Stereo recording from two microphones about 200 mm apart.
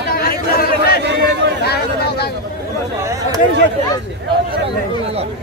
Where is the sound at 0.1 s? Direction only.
45° left (ahead or behind).